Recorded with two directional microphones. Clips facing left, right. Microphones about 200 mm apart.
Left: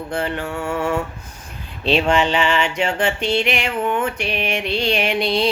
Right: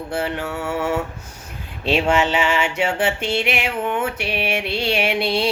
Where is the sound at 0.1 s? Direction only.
10° right (ahead or behind).